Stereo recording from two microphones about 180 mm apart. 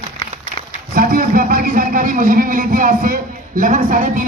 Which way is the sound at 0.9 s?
50° right (ahead or behind).